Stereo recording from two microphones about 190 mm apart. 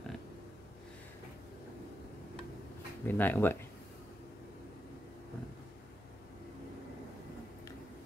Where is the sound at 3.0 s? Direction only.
10° left (ahead or behind).